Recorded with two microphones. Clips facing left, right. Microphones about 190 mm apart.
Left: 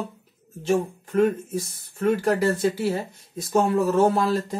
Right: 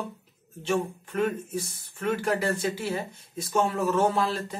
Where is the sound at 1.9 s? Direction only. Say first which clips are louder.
Left 6 dB; 35° left (ahead or behind).